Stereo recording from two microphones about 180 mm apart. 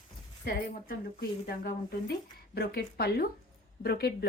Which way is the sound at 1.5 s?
55° left (ahead or behind).